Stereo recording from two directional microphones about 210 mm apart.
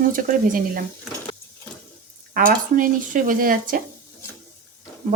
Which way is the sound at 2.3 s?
40° right (ahead or behind).